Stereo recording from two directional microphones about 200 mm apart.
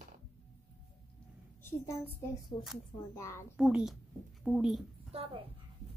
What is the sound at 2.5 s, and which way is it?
Speech, 25° left (ahead or behind).